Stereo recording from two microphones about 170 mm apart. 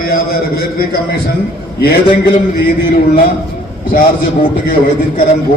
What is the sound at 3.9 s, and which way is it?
Speech, 55° left (ahead or behind).